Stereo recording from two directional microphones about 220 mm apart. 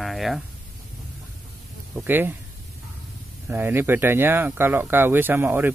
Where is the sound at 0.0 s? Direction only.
Centre (ahead or behind).